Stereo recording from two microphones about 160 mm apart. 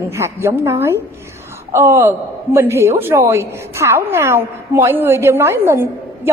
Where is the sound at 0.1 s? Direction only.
15° right (ahead or behind).